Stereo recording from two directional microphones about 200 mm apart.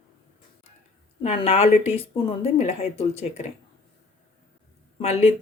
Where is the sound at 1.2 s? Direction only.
30° left (ahead or behind).